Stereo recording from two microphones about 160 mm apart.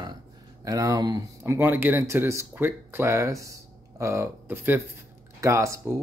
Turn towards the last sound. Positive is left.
turn(degrees=-20)  # may be behind; listen again after turning